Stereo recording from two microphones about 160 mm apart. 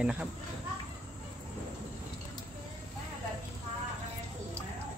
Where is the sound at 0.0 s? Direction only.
5° right (ahead or behind).